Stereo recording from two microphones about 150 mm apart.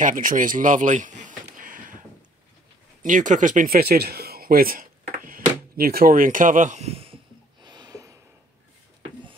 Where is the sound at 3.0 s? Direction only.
60° right (ahead or behind); by 7.2 s 40° right (ahead or behind).